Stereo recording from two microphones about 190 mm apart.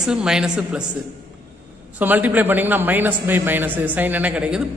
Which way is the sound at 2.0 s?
10° right (ahead or behind).